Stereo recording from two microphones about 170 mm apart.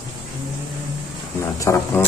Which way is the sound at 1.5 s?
15° left (ahead or behind).